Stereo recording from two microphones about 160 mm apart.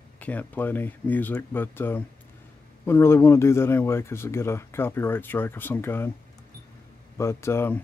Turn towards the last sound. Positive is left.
turn(degrees=15)  # may be behind; listen again after turning